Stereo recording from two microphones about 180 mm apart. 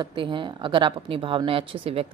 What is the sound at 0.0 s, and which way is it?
A woman's voice, 25° right (ahead or behind).